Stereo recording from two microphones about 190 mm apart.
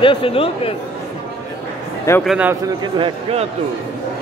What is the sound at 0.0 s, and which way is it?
Speech, 30° left (ahead or behind).